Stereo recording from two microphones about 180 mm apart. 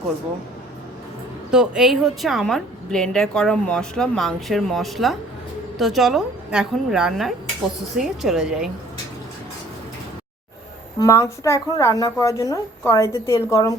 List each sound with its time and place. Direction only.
1.5 s a woman's voice: 5° right (ahead or behind)
11.0 s a woman's voice: 15° left (ahead or behind)